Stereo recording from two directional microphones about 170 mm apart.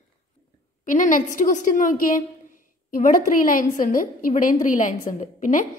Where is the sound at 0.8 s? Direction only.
50° left (ahead or behind).